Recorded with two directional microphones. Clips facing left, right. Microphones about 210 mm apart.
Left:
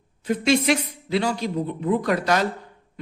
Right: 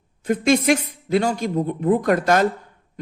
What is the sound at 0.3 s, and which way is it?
Speech, 50° right (ahead or behind).